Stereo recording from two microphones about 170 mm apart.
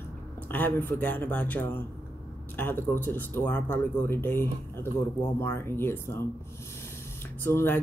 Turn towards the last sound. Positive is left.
turn(degrees=15)  # may be behind; listen again after turning